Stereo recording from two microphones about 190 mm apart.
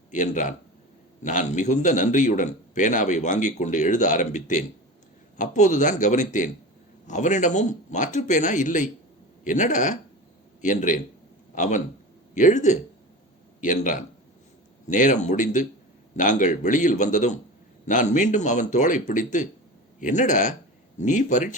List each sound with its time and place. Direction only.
0.1 s a man's voice: 40° left (ahead or behind)